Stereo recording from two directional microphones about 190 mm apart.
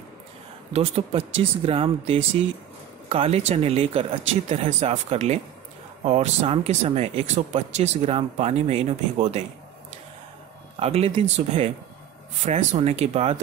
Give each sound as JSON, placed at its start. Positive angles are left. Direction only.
{"t": 0.7, "sound": "speech", "side_deg": -30}
{"t": 10.8, "sound": "speech", "side_deg": -30}